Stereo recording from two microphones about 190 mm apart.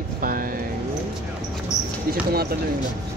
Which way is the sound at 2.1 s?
55° right (ahead or behind).